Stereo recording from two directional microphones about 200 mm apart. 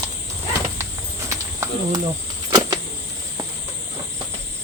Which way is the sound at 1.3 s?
15° right (ahead or behind).